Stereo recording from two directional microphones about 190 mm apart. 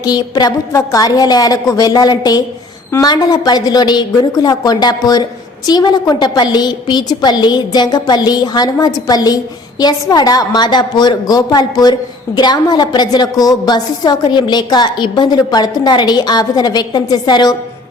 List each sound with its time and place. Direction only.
0.0 s a woman's voice: 20° left (ahead or behind)